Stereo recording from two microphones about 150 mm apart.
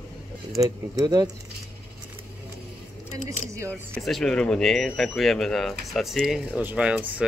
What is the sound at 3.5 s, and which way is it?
Speech, 15° right (ahead or behind).